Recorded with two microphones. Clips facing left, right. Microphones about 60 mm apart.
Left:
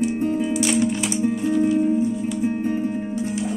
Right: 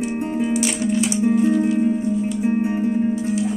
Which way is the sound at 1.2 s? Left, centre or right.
Centre.